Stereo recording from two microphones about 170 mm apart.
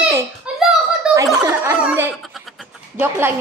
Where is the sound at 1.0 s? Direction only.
5° right (ahead or behind).